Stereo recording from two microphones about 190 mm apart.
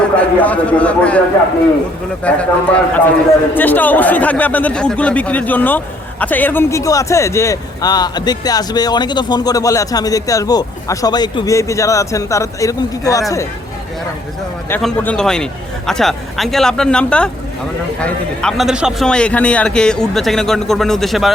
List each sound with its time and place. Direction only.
0.2 s speech: 5° left (ahead or behind)
2.2 s speech: 5° left (ahead or behind)
14.8 s a man's voice: 5° left (ahead or behind)